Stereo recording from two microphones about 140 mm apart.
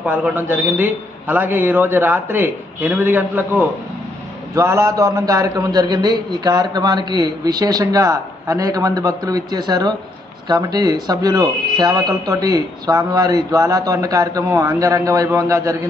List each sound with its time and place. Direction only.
0.0 s a man's voice: 10° right (ahead or behind)